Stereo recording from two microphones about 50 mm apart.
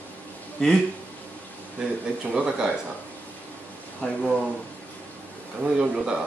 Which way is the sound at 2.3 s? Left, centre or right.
Right.